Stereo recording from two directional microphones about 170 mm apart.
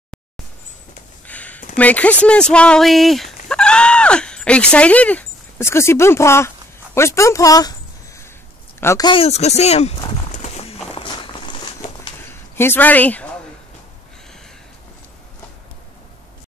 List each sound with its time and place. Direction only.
1.2 s a sound: 10° left (ahead or behind)
1.8 s speech: 10° left (ahead or behind)
8.8 s speech: 25° left (ahead or behind); by 9.9 s 40° left (ahead or behind)
10.3 s walk: 40° left (ahead or behind)
12.3 s speech: 15° left (ahead or behind)